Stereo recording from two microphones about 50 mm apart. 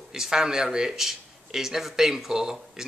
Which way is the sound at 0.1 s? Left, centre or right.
Centre.